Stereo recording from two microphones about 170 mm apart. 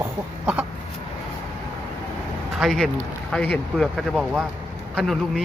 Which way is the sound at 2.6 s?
Centre (ahead or behind).